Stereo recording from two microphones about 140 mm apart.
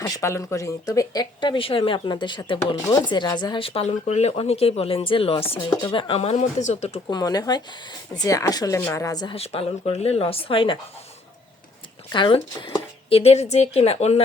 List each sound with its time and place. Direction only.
0.0 s speech: 25° left (ahead or behind); by 7.0 s 50° left (ahead or behind)
7.1 s speech: 30° left (ahead or behind)
9.3 s speech: 45° left (ahead or behind)
12.1 s speech: 35° left (ahead or behind)